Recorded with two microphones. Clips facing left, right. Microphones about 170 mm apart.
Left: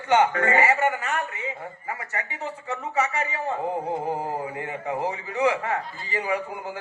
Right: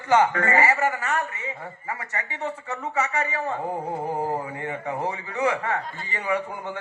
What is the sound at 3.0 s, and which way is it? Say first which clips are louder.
Speech: even; 30° right (ahead or behind).